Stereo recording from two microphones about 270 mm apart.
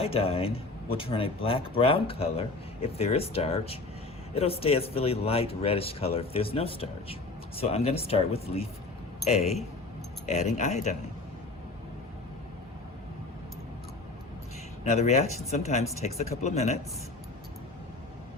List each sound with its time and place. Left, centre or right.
0.0 s speech: left
14.8 s speech: left